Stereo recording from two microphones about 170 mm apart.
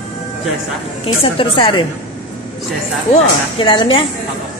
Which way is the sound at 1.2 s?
30° left (ahead or behind).